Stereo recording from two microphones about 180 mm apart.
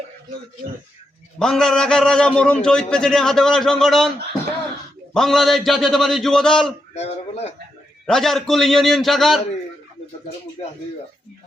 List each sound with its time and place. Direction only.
1.4 s a man's voice: centre (ahead or behind)
5.1 s a man's voice: centre (ahead or behind)
6.9 s speech: 35° left (ahead or behind)
8.0 s a man's voice: centre (ahead or behind)